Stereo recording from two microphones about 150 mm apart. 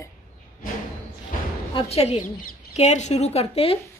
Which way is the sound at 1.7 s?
45° left (ahead or behind).